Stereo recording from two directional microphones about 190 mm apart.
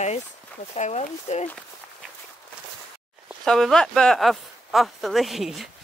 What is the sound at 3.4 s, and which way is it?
Speech, centre (ahead or behind).